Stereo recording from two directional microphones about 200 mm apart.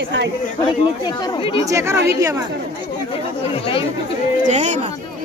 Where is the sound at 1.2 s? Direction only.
25° left (ahead or behind).